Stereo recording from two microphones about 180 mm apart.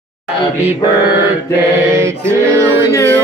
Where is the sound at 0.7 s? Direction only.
10° right (ahead or behind).